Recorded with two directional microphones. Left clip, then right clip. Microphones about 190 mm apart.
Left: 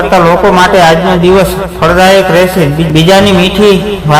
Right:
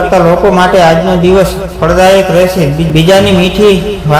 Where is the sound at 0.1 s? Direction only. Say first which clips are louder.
Left 2 dB; 20° left (ahead or behind).